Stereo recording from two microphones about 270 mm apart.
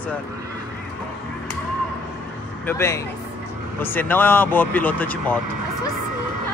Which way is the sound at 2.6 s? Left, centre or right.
Centre.